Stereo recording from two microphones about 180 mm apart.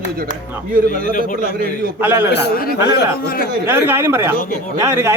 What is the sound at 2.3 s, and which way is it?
Speech, 55° left (ahead or behind).